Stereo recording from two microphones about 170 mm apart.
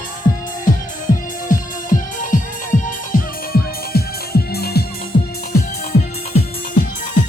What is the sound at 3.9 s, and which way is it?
Music, 65° left (ahead or behind).